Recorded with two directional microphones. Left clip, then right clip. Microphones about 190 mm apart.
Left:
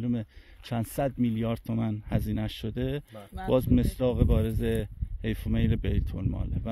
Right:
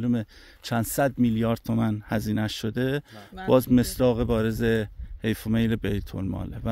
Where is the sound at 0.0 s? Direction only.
40° right (ahead or behind).